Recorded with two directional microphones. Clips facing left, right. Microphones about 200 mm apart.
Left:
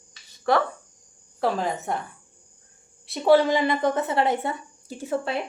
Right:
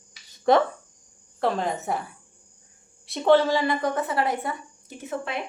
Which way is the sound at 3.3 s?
20° left (ahead or behind).